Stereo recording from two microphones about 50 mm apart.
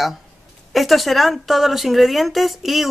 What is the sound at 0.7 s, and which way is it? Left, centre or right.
Speech, centre.